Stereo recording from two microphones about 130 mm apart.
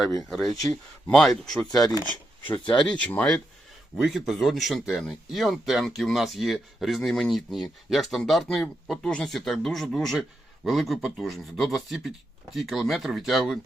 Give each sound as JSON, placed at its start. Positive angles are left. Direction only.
{"t": 0.3, "sound": "speech", "side_deg": 0}
{"t": 1.6, "sound": "speech", "side_deg": 30}
{"t": 2.8, "sound": "speech", "side_deg": 10}
{"t": 3.9, "sound": "speech", "side_deg": -5}